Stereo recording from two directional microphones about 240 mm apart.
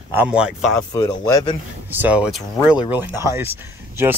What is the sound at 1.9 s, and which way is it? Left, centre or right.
Speech, centre.